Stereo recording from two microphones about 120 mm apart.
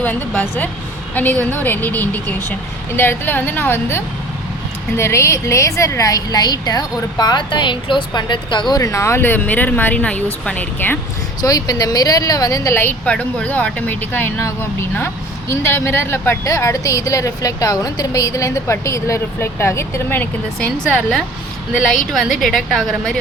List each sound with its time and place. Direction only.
0.0 s a woman's voice: 15° left (ahead or behind)
11.4 s a woman's voice: 30° left (ahead or behind); by 23.1 s centre (ahead or behind)